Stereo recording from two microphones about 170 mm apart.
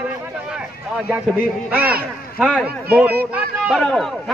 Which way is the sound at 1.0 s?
10° right (ahead or behind).